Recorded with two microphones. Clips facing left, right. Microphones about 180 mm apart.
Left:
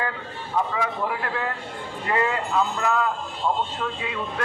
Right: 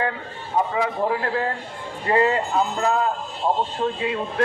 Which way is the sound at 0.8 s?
35° right (ahead or behind).